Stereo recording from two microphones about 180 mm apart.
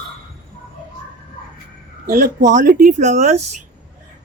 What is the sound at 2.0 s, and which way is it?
Speech, 55° right (ahead or behind).